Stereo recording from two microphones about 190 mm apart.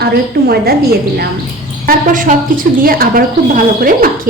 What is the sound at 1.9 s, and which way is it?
A woman's voice, 45° right (ahead or behind).